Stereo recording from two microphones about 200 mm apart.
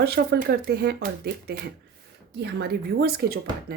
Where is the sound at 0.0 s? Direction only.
50° right (ahead or behind).